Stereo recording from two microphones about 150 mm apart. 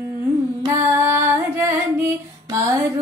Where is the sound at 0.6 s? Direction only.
15° right (ahead or behind).